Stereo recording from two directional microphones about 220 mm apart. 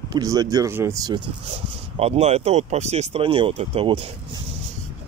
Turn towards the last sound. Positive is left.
turn(degrees=-25)  # may be behind; listen again after turning